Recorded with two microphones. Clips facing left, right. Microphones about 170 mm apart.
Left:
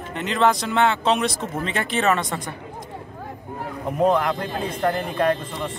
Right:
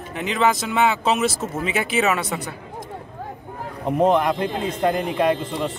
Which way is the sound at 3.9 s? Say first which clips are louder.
Right 2 dB; 20° right (ahead or behind).